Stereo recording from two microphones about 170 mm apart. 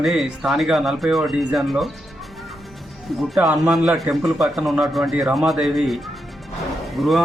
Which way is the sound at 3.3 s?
5° right (ahead or behind).